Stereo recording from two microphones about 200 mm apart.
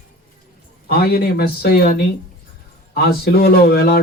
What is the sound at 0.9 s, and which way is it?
A man's voice, 50° left (ahead or behind).